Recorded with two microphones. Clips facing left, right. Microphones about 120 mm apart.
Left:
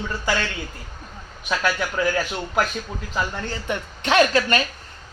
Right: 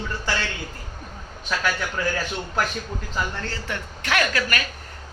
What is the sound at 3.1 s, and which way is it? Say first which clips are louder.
A man's voice: left 3 dB; 15° left (ahead or behind).